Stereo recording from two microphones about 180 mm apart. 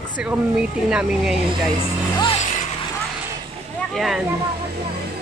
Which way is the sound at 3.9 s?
Centre (ahead or behind).